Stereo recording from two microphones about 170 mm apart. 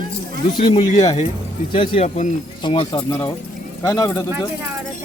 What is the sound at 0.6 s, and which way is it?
Speech, 40° left (ahead or behind).